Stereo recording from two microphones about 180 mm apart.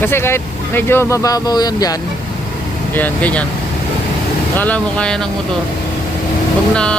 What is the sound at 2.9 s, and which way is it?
Speech, 10° left (ahead or behind).